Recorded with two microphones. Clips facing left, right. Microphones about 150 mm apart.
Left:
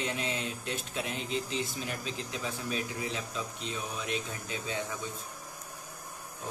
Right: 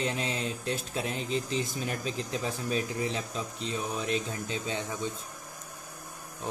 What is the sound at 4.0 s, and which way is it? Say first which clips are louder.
Mantra: right 4 dB; 35° right (ahead or behind).